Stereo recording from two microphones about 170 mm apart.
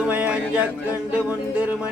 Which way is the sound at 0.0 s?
10° right (ahead or behind).